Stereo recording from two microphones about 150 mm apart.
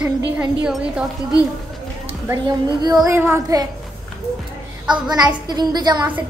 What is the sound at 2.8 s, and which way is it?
Speech, 25° right (ahead or behind).